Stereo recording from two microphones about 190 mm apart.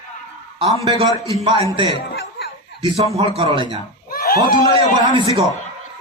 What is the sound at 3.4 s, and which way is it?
Music, 25° right (ahead or behind).